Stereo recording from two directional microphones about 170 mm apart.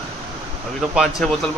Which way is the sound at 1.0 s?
Centre (ahead or behind).